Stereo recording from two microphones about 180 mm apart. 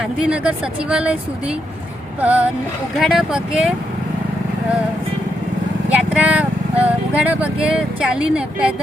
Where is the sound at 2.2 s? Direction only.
10° right (ahead or behind).